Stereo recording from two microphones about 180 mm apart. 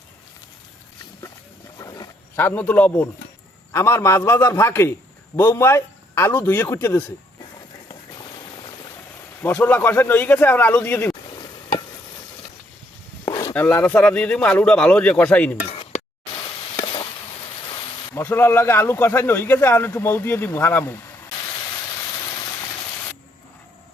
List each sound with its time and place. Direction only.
1.8 s wild animals: 20° left (ahead or behind)
3.7 s a man's voice: 15° left (ahead or behind)
9.4 s a man's voice: 10° left (ahead or behind)
13.2 s a sound: 20° left (ahead or behind)
13.5 s a man's voice: 10° left (ahead or behind)
15.6 s a sound: 30° left (ahead or behind)
16.4 s sizzle: 30° left (ahead or behind)
18.1 s a man's voice: 10° left (ahead or behind)